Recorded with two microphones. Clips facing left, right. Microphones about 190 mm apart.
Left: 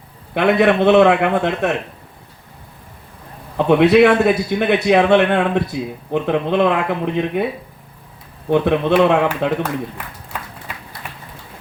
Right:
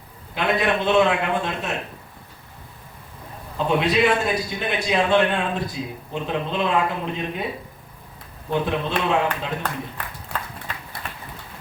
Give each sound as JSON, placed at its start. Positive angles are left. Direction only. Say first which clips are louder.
{"t": 0.3, "sound": "a man's voice", "louder": "left 8 dB", "side_deg": 60}
{"t": 3.6, "sound": "a man's voice", "louder": "left 9 dB", "side_deg": 60}
{"t": 8.4, "sound": "a man's voice", "louder": "left 9 dB", "side_deg": 60}